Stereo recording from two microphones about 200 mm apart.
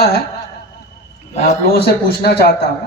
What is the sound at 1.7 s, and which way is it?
Speech, 50° left (ahead or behind).